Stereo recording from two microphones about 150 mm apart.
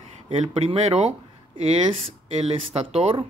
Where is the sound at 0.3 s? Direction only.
45° right (ahead or behind).